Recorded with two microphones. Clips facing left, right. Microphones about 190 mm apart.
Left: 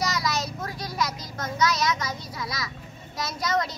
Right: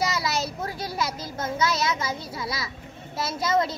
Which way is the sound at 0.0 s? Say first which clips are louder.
Right 1 dB; 25° right (ahead or behind).